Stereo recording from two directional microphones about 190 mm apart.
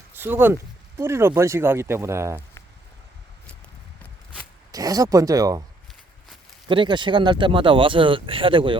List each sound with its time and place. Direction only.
0.2 s speech: 10° right (ahead or behind)
4.7 s speech: 20° right (ahead or behind)
6.7 s speech: 25° right (ahead or behind)